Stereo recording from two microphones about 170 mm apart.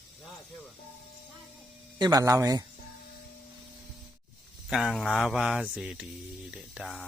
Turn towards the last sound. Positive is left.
turn(degrees=0)  # may be behind; listen again after turning